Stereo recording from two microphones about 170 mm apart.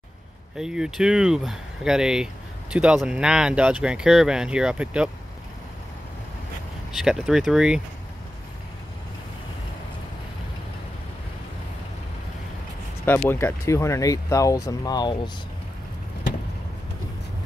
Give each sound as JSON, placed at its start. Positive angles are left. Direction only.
{"t": 0.6, "sound": "speech", "side_deg": -5}
{"t": 6.9, "sound": "speech", "side_deg": 0}
{"t": 13.0, "sound": "speech", "side_deg": 15}